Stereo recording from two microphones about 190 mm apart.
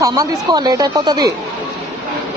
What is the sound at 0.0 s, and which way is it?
Speech, 20° right (ahead or behind).